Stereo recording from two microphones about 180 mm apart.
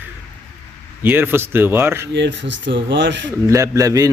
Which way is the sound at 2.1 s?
85° right.